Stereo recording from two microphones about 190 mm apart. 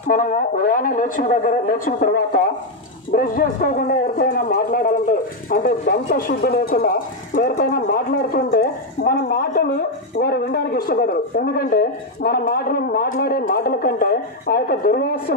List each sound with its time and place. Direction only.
0.1 s speech: 45° left (ahead or behind)